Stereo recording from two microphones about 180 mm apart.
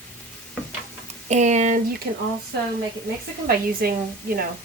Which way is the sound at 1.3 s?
40° right (ahead or behind).